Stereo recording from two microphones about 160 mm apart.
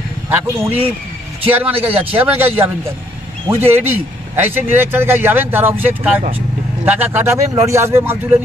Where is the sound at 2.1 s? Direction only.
15° right (ahead or behind).